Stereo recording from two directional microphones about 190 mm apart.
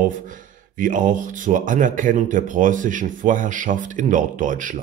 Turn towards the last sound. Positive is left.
turn(degrees=-45)  # may be behind; listen again after turning